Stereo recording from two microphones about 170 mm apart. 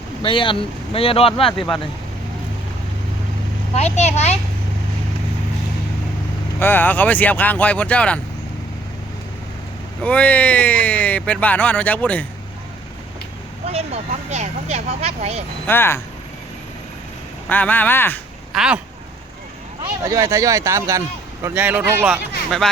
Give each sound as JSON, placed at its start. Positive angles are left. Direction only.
{"t": 0.2, "sound": "speech", "side_deg": 30}
{"t": 1.5, "sound": "speech", "side_deg": 0}
{"t": 3.8, "sound": "speech", "side_deg": 40}
{"t": 6.6, "sound": "speech", "side_deg": 10}
{"t": 10.0, "sound": "speech", "side_deg": 10}
{"t": 13.7, "sound": "speech", "side_deg": -40}
{"t": 15.6, "sound": "speech", "side_deg": 15}
{"t": 17.5, "sound": "speech", "side_deg": 10}
{"t": 18.5, "sound": "speech", "side_deg": -5}
{"t": 20.1, "sound": "speech", "side_deg": -20}
{"t": 22.4, "sound": "speech", "side_deg": 0}